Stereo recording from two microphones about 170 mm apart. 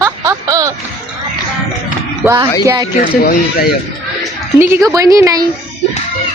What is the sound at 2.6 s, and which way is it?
Speech, 20° right (ahead or behind).